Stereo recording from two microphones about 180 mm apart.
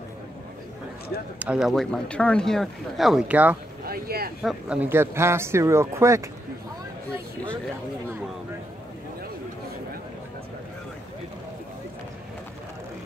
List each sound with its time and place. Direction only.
1.4 s speech: 5° right (ahead or behind)
3.8 s speech: 55° right (ahead or behind)
4.4 s speech: 5° right (ahead or behind)